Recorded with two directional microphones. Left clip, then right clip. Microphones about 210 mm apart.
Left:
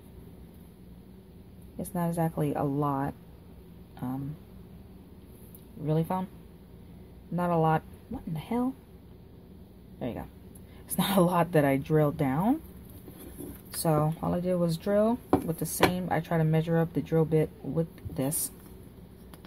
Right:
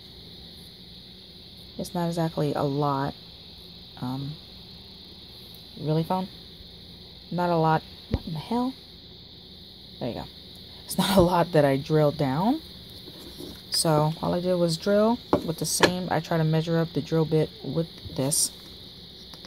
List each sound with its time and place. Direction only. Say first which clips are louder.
1.8 s speech: right 3 dB; 20° right (ahead or behind)
5.9 s speech: right 3 dB; 20° right (ahead or behind)
7.3 s speech: right 3 dB; 20° right (ahead or behind)
9.9 s speech: right 4 dB; 20° right (ahead or behind)
13.7 s speech: right 5 dB; 25° right (ahead or behind)